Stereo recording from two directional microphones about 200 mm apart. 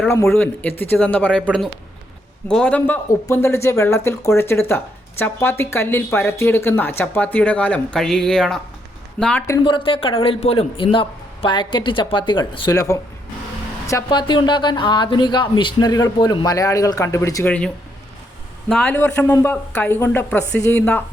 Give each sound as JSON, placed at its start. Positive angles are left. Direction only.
{"t": 0.0, "sound": "speech", "side_deg": 10}
{"t": 9.5, "sound": "speech", "side_deg": 25}
{"t": 18.7, "sound": "speech", "side_deg": 5}